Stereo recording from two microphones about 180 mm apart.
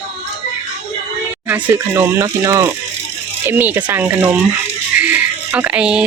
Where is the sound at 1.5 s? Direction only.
10° right (ahead or behind).